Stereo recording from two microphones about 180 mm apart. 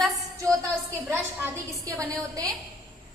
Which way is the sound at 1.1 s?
15° right (ahead or behind).